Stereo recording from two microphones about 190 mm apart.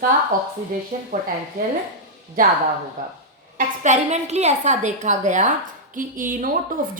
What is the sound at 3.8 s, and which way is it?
A woman's voice, 40° right (ahead or behind).